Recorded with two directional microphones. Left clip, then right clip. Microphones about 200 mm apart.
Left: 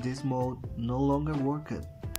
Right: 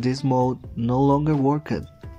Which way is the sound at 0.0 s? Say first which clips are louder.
Right 10 dB; 25° right (ahead or behind).